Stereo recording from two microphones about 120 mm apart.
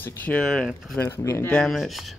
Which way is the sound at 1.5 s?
Centre (ahead or behind).